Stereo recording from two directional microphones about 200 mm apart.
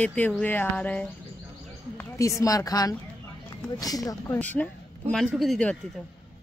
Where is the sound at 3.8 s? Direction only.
20° left (ahead or behind).